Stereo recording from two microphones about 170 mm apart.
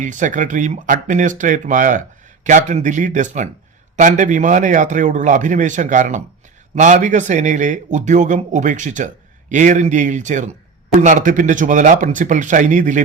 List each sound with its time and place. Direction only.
0.0 s speech: 45° right (ahead or behind)